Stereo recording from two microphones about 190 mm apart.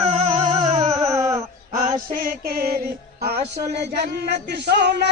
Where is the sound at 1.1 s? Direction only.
15° right (ahead or behind).